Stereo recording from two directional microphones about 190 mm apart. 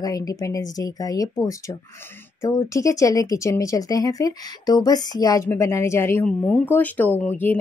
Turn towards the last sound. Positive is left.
turn(degrees=10)  # may be behind; listen again after turning